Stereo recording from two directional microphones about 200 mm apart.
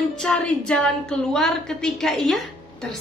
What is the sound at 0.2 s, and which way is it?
A woman's voice, centre (ahead or behind).